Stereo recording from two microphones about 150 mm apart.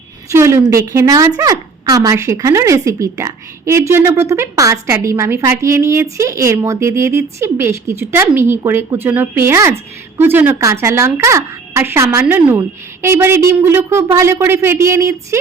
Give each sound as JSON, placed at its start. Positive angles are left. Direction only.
{"t": 0.3, "sound": "a woman's voice", "side_deg": -20}